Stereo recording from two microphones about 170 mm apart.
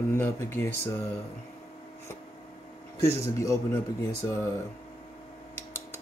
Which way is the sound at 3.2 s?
15° left (ahead or behind).